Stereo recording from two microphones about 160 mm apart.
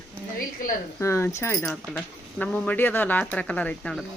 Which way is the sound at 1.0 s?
15° left (ahead or behind).